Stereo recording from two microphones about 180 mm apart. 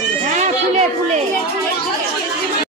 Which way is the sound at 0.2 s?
40° right (ahead or behind).